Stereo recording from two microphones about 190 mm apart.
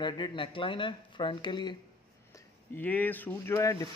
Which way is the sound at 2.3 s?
10° left (ahead or behind).